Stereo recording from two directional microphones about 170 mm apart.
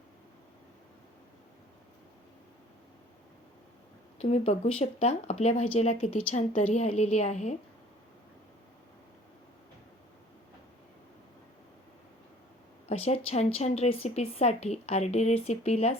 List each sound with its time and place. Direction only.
4.2 s a woman's voice: 40° left (ahead or behind)
12.9 s a woman's voice: 40° left (ahead or behind)